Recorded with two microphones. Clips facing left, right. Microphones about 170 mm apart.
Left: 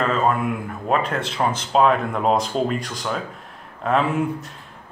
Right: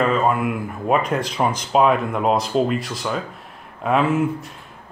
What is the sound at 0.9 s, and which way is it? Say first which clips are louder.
Speech: right 2 dB; 10° right (ahead or behind).